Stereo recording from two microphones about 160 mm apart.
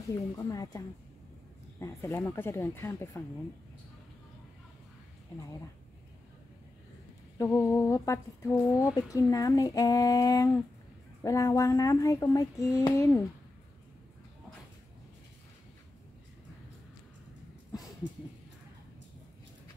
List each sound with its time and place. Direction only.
0.1 s speech: 20° left (ahead or behind)
7.3 s speech: 20° left (ahead or behind)